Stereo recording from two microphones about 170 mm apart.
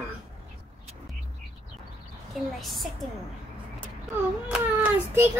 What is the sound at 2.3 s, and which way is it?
Speech, centre (ahead or behind).